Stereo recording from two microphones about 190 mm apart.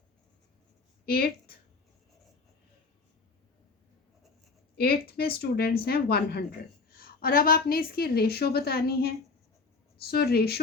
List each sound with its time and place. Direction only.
1.0 s a woman's voice: 55° left (ahead or behind)
4.8 s a woman's voice: 55° left (ahead or behind)